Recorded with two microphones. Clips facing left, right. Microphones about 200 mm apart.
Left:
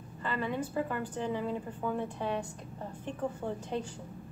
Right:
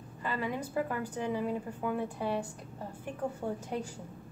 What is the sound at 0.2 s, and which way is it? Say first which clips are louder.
A woman's voice: left 1 dB; 10° right (ahead or behind).